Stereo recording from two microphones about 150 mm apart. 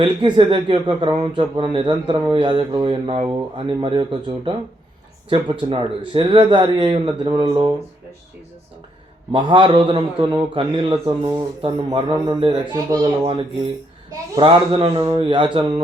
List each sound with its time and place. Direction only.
0.0 s speech: 35° right (ahead or behind)
9.3 s a child's voice: 35° right (ahead or behind)
14.1 s speech: 35° right (ahead or behind)